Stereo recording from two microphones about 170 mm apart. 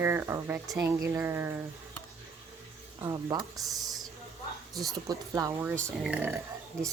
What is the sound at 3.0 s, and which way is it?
Speech, 25° right (ahead or behind).